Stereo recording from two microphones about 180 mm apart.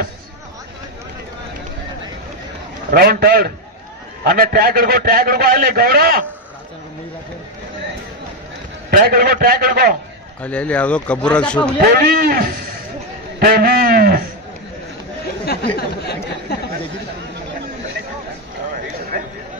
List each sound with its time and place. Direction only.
2.9 s a man's voice: 55° right (ahead or behind)
8.9 s a man's voice: 55° right (ahead or behind)
10.4 s speech: 5° left (ahead or behind)
11.8 s a man's voice: 60° right (ahead or behind)
15.4 s a sound: 65° left (ahead or behind)